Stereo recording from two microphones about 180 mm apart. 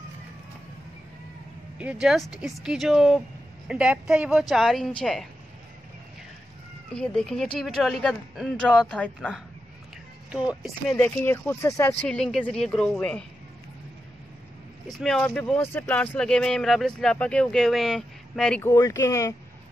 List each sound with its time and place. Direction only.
1.8 s speech: 5° right (ahead or behind)
6.9 s speech: 5° left (ahead or behind)
11.0 s speech: 10° left (ahead or behind)
14.9 s speech: centre (ahead or behind)
18.7 s speech: 20° left (ahead or behind)